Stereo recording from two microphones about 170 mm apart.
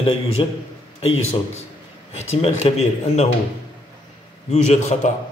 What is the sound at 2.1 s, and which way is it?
A man's voice, 40° left (ahead or behind).